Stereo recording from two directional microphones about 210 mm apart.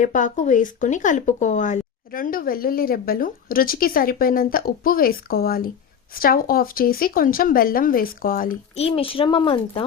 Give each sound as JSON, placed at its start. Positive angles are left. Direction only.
{"t": 0.0, "sound": "speech", "side_deg": 35}
{"t": 8.8, "sound": "a woman's voice", "side_deg": 25}